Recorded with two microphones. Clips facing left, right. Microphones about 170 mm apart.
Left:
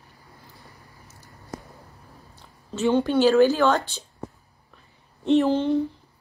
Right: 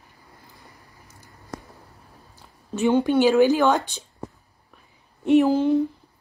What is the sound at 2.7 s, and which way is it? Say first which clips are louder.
A woman's voice: right 2 dB; 15° right (ahead or behind).